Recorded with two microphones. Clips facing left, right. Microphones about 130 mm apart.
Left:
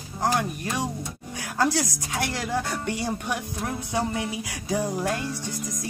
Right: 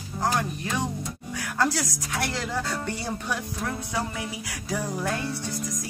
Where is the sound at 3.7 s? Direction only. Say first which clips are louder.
Left 4 dB; 25° left (ahead or behind).